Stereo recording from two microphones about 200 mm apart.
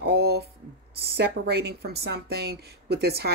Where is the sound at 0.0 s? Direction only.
55° right (ahead or behind).